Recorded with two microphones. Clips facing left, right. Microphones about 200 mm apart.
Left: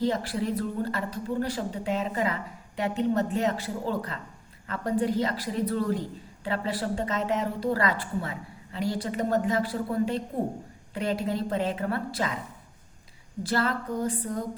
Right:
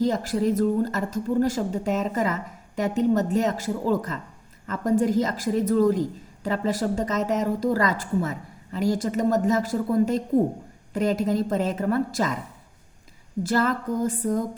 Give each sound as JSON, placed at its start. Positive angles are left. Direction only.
{"t": 0.0, "sound": "a woman's voice", "side_deg": -45}
{"t": 13.4, "sound": "a woman's voice", "side_deg": -45}